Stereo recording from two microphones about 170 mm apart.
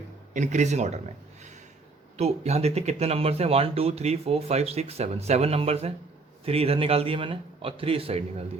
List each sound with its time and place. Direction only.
0.3 s speech: 45° right (ahead or behind)
2.1 s speech: 40° right (ahead or behind)